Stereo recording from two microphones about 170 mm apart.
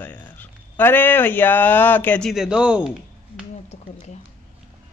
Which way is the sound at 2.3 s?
5° right (ahead or behind).